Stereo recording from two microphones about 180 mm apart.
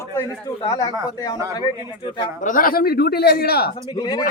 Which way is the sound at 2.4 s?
50° left (ahead or behind).